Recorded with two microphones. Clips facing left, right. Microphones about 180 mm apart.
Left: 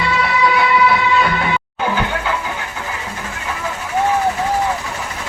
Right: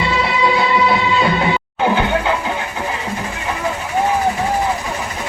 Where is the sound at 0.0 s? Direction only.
25° right (ahead or behind).